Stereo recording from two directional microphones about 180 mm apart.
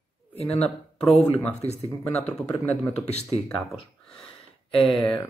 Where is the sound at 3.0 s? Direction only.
35° left (ahead or behind).